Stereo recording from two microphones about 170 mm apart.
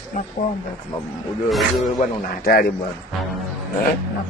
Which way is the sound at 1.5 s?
Centre (ahead or behind).